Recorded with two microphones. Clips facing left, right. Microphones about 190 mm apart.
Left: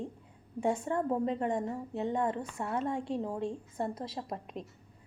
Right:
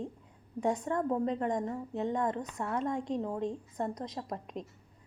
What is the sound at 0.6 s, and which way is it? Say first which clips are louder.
Speech: even; 30° left (ahead or behind).